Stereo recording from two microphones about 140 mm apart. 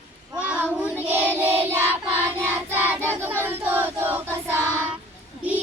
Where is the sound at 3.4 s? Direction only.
15° right (ahead or behind).